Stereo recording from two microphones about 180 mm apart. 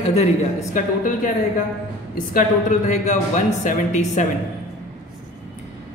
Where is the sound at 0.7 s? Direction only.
45° left (ahead or behind).